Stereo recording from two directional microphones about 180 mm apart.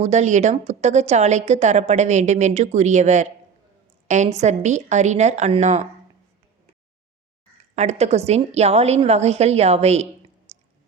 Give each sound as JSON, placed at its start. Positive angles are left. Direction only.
{"t": 0.0, "sound": "a woman's voice", "side_deg": -40}
{"t": 7.8, "sound": "a woman's voice", "side_deg": -40}